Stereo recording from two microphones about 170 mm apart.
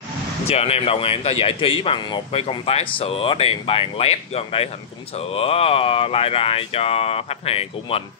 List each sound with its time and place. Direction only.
0.5 s speech: 35° left (ahead or behind)